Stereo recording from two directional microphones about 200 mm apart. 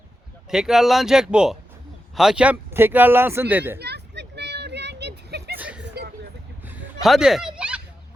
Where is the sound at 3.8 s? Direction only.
55° right (ahead or behind).